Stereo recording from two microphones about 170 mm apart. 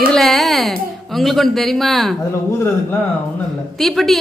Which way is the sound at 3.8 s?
Centre (ahead or behind).